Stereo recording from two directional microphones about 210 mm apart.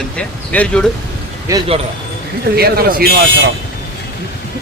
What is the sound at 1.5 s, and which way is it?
Speech, 15° right (ahead or behind).